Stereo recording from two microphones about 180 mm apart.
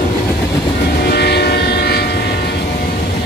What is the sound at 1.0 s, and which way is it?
Train, 65° left (ahead or behind).